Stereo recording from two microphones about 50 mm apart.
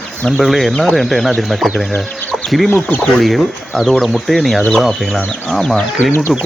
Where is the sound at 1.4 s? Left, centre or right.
Centre.